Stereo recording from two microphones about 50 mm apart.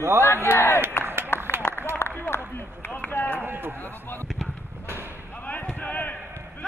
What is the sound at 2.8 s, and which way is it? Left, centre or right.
Run, left.